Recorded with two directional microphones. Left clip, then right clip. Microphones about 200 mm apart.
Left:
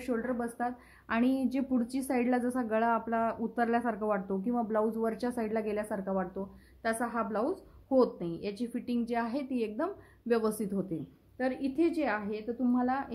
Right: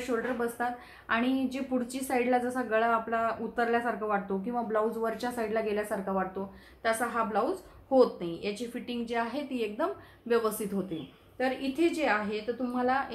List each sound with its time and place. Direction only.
0.1 s a woman's voice: 45° left (ahead or behind)